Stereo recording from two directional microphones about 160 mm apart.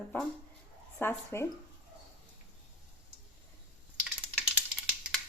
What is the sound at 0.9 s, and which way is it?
Speech, 15° left (ahead or behind).